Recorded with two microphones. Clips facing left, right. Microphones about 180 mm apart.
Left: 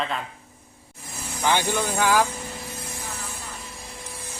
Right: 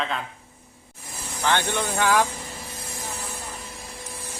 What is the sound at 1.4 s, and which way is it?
Speech, 10° left (ahead or behind).